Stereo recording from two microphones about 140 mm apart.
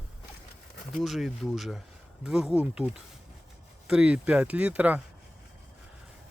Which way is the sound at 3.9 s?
5° right (ahead or behind).